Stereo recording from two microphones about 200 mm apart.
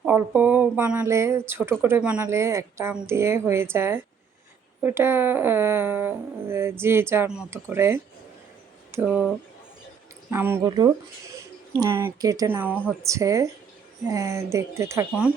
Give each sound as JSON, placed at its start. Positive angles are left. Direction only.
{"t": 0.0, "sound": "speech", "side_deg": -10}
{"t": 10.3, "sound": "speech", "side_deg": -10}